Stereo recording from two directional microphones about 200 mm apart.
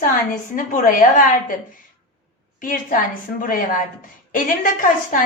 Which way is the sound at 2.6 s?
45° left (ahead or behind).